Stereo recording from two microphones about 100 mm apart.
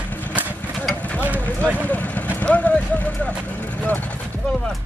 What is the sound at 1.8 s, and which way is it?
Speech, 15° left (ahead or behind).